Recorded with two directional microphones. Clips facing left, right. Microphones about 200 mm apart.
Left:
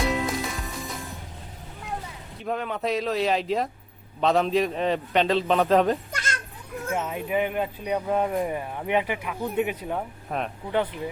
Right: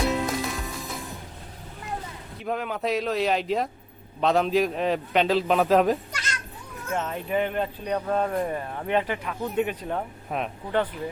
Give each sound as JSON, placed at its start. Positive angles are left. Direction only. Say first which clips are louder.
{"t": 0.0, "sound": "music", "louder": "right 1 dB", "side_deg": 0}
{"t": 2.4, "sound": "a man's voice", "louder": "even", "side_deg": 0}
{"t": 6.1, "sound": "cat", "louder": "left 2 dB", "side_deg": 50}
{"t": 6.9, "sound": "speech", "louder": "even", "side_deg": 10}